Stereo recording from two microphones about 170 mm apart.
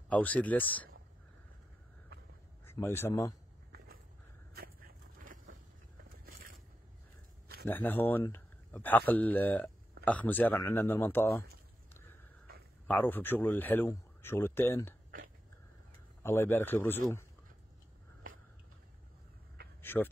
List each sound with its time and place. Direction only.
0.1 s speech: 10° left (ahead or behind)
2.6 s speech: 15° left (ahead or behind)
4.6 s a sound: 60° right (ahead or behind)
7.6 s speech: 10° left (ahead or behind)
12.8 s speech: 10° left (ahead or behind)
16.2 s speech: 15° left (ahead or behind)
19.8 s a sound: 10° left (ahead or behind)